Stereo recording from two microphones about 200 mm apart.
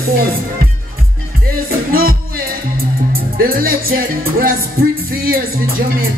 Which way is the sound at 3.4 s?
45° right (ahead or behind).